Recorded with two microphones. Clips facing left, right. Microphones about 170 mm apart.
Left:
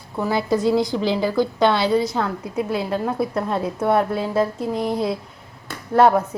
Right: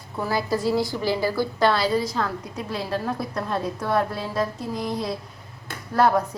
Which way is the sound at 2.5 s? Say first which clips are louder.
Left 8 dB; 20° left (ahead or behind).